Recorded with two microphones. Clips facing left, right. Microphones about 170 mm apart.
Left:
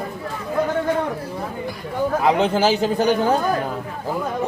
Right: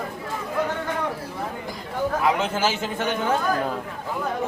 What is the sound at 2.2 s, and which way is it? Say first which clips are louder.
A man's voice: left 7 dB; 35° left (ahead or behind).